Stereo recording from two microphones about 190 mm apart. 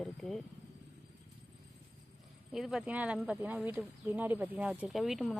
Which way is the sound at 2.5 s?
5° right (ahead or behind).